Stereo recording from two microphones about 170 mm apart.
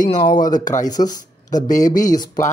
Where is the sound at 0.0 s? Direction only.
45° left (ahead or behind).